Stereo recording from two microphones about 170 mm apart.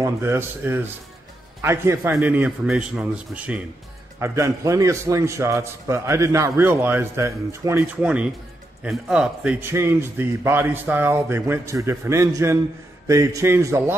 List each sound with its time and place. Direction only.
0.0 s a man's voice: 15° right (ahead or behind)
4.2 s a man's voice: 20° right (ahead or behind)